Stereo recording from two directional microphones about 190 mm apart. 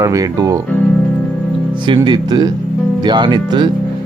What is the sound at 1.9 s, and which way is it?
Speech, 20° right (ahead or behind).